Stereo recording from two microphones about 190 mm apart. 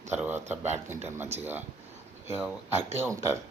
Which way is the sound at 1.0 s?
10° right (ahead or behind).